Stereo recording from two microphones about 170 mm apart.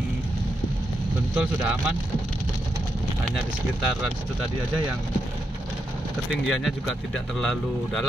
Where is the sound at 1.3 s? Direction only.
10° right (ahead or behind).